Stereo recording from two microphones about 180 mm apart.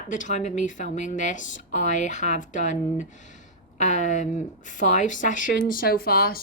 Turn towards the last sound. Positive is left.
turn(degrees=55)  # may be behind; listen again after turning